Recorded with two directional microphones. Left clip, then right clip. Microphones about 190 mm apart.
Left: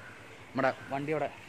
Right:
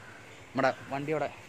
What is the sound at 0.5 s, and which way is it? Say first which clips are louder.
Speech: right 1 dB; 20° right (ahead or behind).